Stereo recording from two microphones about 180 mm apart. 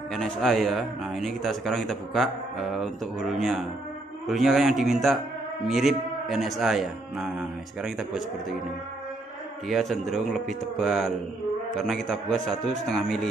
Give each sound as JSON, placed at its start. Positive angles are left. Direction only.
{"t": 0.1, "sound": "speech", "side_deg": 0}
{"t": 9.7, "sound": "speech", "side_deg": 0}